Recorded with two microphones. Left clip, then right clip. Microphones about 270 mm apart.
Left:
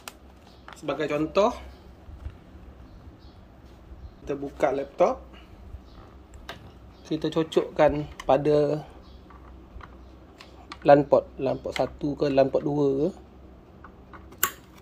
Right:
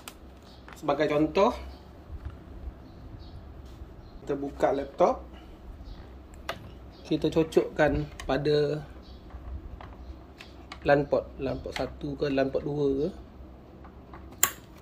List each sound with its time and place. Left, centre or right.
0.8 s speech: centre
4.3 s speech: centre
7.1 s speech: centre
10.9 s speech: left